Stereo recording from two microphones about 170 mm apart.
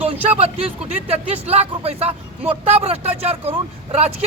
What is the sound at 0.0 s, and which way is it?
Speech, 40° right (ahead or behind).